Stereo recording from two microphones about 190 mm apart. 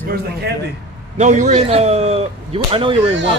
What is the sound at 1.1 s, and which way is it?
Speech, 40° right (ahead or behind).